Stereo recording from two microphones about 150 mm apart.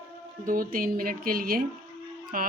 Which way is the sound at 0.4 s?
70° right (ahead or behind).